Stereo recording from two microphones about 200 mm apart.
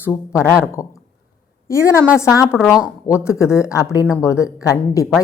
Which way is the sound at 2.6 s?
5° right (ahead or behind).